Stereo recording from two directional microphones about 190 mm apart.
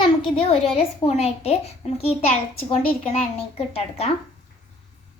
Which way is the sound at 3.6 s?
35° left (ahead or behind).